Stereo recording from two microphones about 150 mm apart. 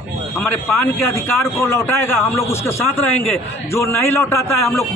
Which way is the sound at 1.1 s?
15° left (ahead or behind).